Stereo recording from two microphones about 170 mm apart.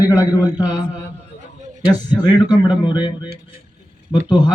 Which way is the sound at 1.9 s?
25° left (ahead or behind).